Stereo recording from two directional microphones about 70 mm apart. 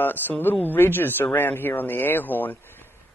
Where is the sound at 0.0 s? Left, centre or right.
Left.